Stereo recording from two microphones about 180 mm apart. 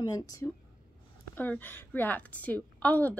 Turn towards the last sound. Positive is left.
turn(degrees=10)  # may be behind; listen again after turning